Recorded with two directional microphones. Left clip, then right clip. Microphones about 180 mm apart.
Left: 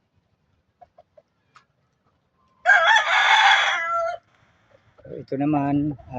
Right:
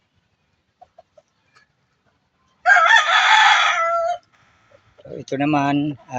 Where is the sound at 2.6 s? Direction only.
40° left (ahead or behind).